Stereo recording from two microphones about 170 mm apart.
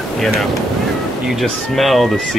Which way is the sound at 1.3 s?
Centre (ahead or behind).